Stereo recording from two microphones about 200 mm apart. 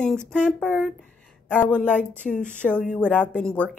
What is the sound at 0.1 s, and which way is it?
Speech, 5° left (ahead or behind).